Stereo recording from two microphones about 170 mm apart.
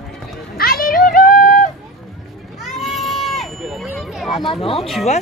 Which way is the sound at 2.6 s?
Centre (ahead or behind).